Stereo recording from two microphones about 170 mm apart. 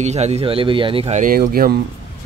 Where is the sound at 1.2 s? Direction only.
60° right (ahead or behind).